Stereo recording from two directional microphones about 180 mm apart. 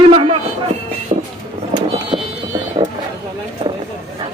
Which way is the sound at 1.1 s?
35° right (ahead or behind).